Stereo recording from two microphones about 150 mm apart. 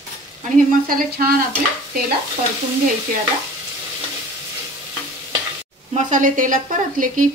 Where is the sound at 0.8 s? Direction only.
80° right.